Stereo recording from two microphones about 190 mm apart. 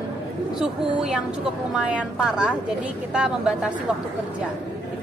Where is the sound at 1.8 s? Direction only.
5° right (ahead or behind).